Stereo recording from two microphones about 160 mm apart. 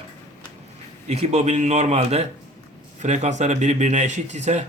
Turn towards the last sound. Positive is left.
turn(degrees=-45)  # may be behind; listen again after turning